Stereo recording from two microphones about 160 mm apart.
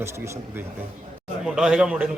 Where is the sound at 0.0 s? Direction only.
15° right (ahead or behind).